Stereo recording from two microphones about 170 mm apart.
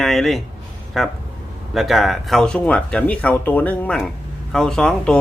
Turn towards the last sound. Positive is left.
turn(degrees=5)  # may be behind; listen again after turning